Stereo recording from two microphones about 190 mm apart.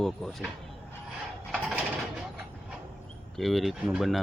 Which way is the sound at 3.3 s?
Centre (ahead or behind).